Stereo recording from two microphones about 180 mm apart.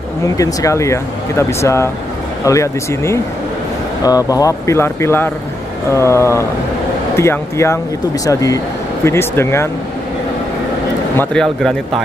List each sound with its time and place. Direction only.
0.4 s speech: 20° left (ahead or behind)
11.1 s speech: 5° left (ahead or behind)